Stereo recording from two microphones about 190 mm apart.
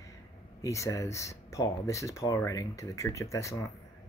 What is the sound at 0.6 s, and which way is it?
Speech, 15° left (ahead or behind).